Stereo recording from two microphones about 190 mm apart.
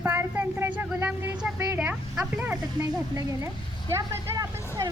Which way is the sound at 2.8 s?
20° right (ahead or behind).